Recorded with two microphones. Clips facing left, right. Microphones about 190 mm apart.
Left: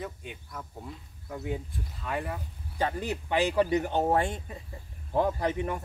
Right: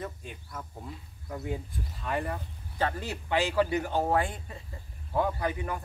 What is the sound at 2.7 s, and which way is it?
A man's voice, 15° left (ahead or behind).